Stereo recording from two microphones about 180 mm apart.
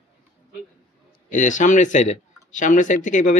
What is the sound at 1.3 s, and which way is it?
Speech, 45° left (ahead or behind).